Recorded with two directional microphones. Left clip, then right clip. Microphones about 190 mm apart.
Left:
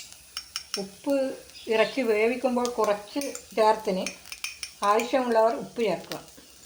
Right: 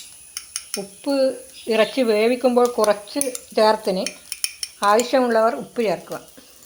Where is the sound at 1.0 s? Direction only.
45° right (ahead or behind).